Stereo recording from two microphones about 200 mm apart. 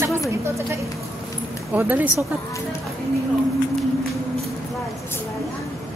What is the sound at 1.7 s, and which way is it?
Speech, 10° right (ahead or behind).